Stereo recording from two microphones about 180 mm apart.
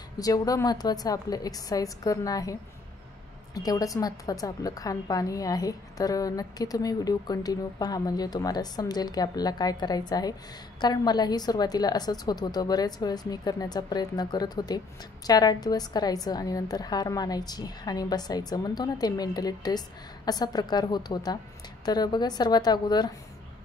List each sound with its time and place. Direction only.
0.2 s a woman's voice: 20° left (ahead or behind)
3.5 s a woman's voice: 20° left (ahead or behind)